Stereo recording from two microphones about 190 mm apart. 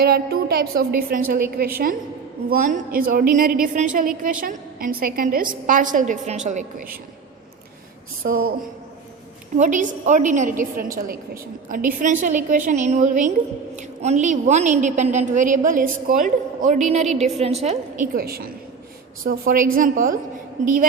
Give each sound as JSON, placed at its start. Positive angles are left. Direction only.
{"t": 0.0, "sound": "a woman's voice", "side_deg": -55}
{"t": 8.2, "sound": "a woman's voice", "side_deg": -50}
{"t": 9.6, "sound": "a woman's voice", "side_deg": -40}
{"t": 18.1, "sound": "a woman's voice", "side_deg": -55}